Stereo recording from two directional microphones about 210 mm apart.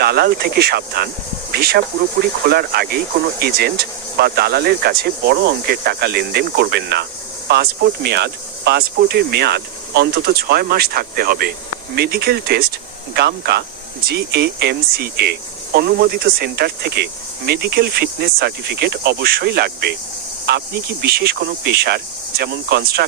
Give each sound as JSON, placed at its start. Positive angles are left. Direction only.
{"t": 0.0, "sound": "speech", "side_deg": -50}
{"t": 21.0, "sound": "speech", "side_deg": -50}